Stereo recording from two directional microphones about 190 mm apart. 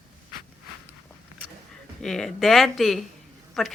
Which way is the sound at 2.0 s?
Centre (ahead or behind).